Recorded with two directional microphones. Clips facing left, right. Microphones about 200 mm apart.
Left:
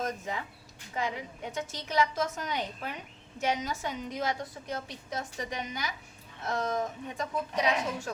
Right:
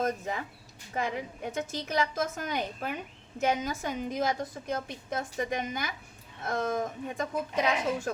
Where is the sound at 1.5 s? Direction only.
50° right (ahead or behind).